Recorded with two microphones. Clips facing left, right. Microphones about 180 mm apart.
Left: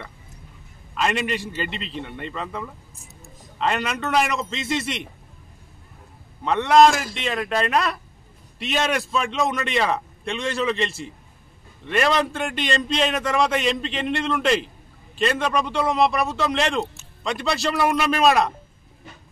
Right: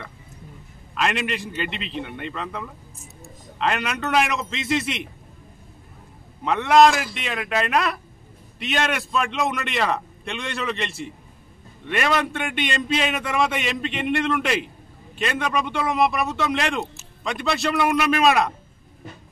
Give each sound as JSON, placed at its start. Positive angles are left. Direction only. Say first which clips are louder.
{"t": 0.9, "sound": "a man's voice", "louder": "left 1 dB", "side_deg": 0}
{"t": 6.4, "sound": "a man's voice", "louder": "even", "side_deg": 0}